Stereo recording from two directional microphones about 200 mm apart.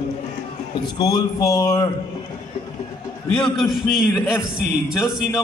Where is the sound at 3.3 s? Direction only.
5° left (ahead or behind).